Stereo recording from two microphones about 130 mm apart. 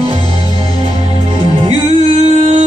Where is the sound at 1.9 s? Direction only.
50° right (ahead or behind).